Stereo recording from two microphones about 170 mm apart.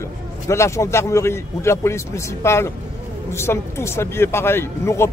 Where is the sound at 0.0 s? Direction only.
15° left (ahead or behind).